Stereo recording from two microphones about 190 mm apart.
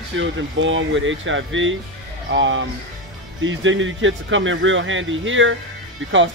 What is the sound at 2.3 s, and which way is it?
Speech, 75° right (ahead or behind).